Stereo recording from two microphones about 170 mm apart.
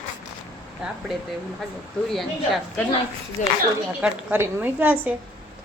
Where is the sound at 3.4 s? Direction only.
50° left (ahead or behind).